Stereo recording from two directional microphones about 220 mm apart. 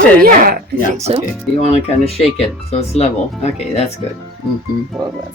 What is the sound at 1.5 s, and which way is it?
Speech, 25° left (ahead or behind).